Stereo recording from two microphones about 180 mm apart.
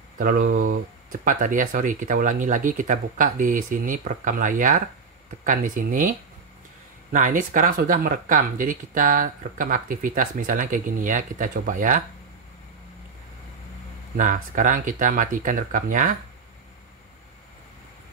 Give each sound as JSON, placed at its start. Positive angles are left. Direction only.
{"t": 0.2, "sound": "speech", "side_deg": -50}
{"t": 14.1, "sound": "speech", "side_deg": -45}